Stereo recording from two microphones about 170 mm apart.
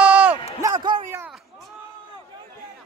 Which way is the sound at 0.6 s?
25° right (ahead or behind).